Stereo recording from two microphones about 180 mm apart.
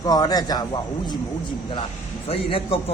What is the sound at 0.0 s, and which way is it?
Speech, 20° left (ahead or behind).